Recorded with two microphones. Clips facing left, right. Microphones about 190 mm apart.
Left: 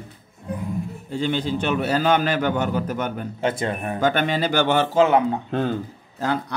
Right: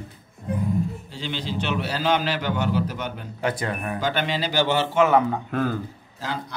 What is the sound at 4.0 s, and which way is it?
Speech, 50° left (ahead or behind).